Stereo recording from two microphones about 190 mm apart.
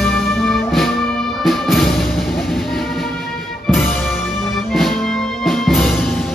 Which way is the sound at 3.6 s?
Centre (ahead or behind).